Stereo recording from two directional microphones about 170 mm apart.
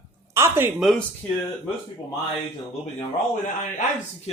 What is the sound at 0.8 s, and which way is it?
Speech, centre (ahead or behind).